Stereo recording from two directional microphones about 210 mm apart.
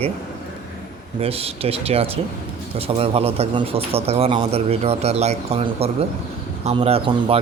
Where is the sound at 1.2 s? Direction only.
30° right (ahead or behind).